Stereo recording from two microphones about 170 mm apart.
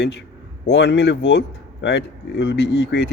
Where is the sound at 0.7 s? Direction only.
90° left.